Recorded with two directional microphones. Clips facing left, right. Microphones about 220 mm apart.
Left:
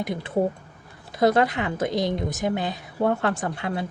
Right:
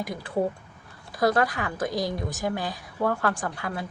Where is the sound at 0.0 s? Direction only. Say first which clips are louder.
Left 3 dB; 20° left (ahead or behind).